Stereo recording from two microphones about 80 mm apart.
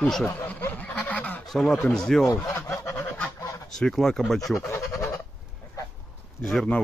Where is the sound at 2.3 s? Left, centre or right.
Left.